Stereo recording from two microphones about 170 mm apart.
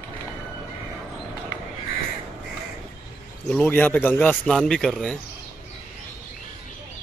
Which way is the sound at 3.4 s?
10° left (ahead or behind).